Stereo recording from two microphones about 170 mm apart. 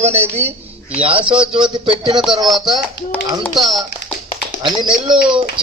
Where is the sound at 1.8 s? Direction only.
35° right (ahead or behind).